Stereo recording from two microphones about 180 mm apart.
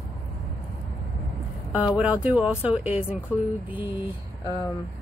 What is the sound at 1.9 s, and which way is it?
Speech, 5° right (ahead or behind).